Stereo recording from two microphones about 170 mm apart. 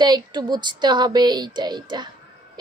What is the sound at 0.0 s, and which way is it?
Speech, 25° right (ahead or behind).